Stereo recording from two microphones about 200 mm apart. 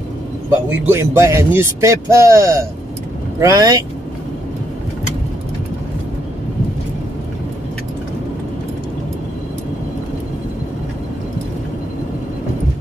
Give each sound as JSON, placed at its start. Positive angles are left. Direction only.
{"t": 0.5, "sound": "a man's voice", "side_deg": -10}